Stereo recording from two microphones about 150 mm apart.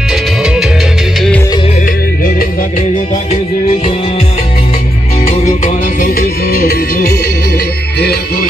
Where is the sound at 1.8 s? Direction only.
70° left (ahead or behind).